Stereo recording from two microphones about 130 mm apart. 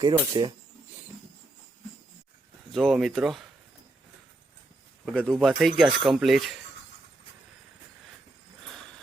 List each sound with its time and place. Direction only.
0.0 s speech: 30° right (ahead or behind)
2.7 s speech: centre (ahead or behind)
5.0 s speech: 5° left (ahead or behind)